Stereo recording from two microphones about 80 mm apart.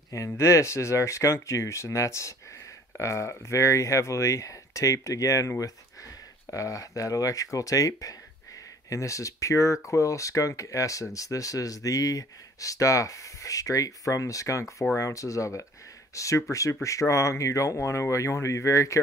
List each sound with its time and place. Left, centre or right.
0.3 s speech: left
6.5 s speech: left